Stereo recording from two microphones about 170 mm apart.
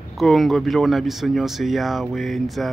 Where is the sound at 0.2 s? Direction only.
Centre (ahead or behind).